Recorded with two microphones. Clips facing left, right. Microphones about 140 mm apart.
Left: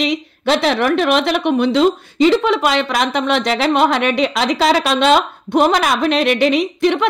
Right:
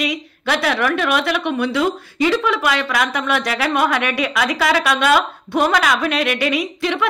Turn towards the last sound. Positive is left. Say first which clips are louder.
# left 6 dB
turn(degrees=25)  # may be behind; listen again after turning